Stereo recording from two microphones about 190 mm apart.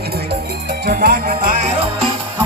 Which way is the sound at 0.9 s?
50° right (ahead or behind).